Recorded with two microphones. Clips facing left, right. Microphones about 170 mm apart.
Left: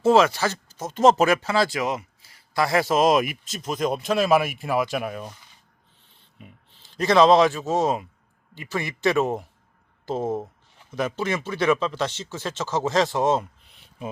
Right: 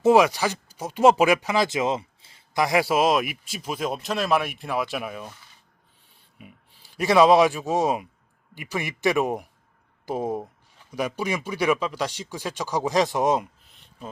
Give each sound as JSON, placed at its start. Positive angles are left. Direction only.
{"t": 0.0, "sound": "speech", "side_deg": -15}
{"t": 6.4, "sound": "a man's voice", "side_deg": -10}